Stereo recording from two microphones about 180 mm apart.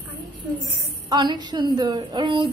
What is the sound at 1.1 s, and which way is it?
A woman's voice, 25° right (ahead or behind).